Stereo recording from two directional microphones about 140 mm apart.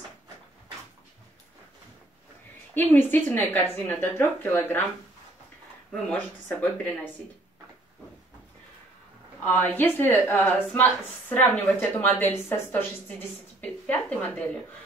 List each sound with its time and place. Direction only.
2.7 s speech: 15° left (ahead or behind)
5.9 s speech: 10° left (ahead or behind)
9.4 s speech: 15° left (ahead or behind)
13.6 s a sound: 10° left (ahead or behind)